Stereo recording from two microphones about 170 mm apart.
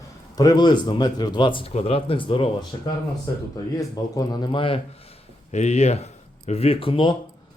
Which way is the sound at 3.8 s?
20° left (ahead or behind).